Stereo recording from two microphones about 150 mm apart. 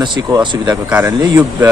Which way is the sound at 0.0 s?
30° right (ahead or behind).